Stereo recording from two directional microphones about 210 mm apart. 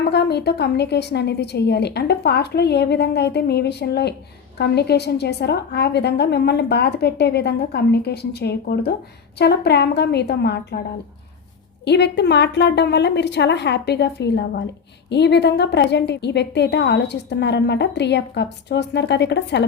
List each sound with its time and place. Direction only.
0.0 s a woman's voice: 50° left (ahead or behind)
11.9 s a woman's voice: 55° left (ahead or behind)